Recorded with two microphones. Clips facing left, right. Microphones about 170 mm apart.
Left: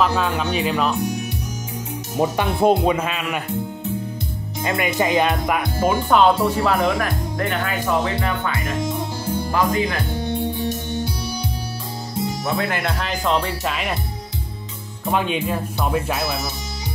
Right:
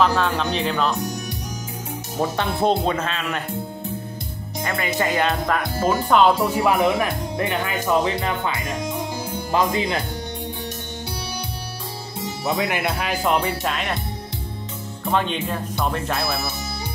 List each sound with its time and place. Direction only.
0.0 s speech: 5° left (ahead or behind)
2.1 s speech: 10° left (ahead or behind)
4.6 s speech: 20° left (ahead or behind)
6.0 s speech: centre (ahead or behind)
6.6 s speech: 15° right (ahead or behind)
12.4 s speech: 15° right (ahead or behind); by 13.9 s centre (ahead or behind)
15.0 s speech: 10° left (ahead or behind)